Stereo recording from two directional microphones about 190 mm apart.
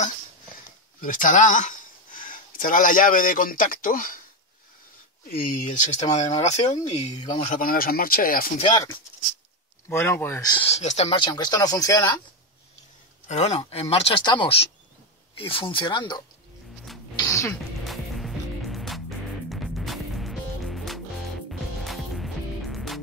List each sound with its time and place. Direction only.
1.0 s speech: 45° left (ahead or behind)
5.2 s speech: 50° left (ahead or behind)
5.7 s speech: 35° left (ahead or behind)
8.5 s speech: 25° left (ahead or behind)
9.8 s speech: 15° left (ahead or behind)
10.5 s speech: 30° left (ahead or behind)
11.2 s speech: 20° left (ahead or behind)
13.3 s speech: 35° left (ahead or behind)
17.2 s music: 15° left (ahead or behind)
17.8 s music: centre (ahead or behind)